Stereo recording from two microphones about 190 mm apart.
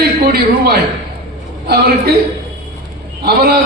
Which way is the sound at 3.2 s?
55° right (ahead or behind).